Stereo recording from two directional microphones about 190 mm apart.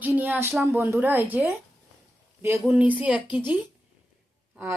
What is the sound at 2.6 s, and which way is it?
Speech, 5° right (ahead or behind).